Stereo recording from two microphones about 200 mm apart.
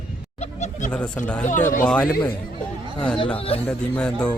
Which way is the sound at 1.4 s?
40° left (ahead or behind).